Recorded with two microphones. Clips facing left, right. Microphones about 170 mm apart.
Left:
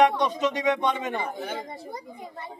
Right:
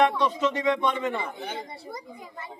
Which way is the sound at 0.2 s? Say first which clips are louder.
Even; 15° left (ahead or behind).